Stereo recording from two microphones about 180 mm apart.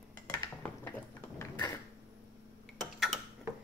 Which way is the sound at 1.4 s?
15° left (ahead or behind).